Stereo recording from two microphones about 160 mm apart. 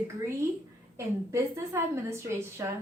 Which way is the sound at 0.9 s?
15° right (ahead or behind).